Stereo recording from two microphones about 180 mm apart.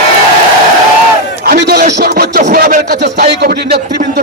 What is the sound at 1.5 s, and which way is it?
Music, 60° right (ahead or behind).